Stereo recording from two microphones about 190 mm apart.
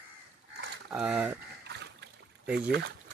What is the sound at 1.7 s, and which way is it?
Splash, 65° right (ahead or behind).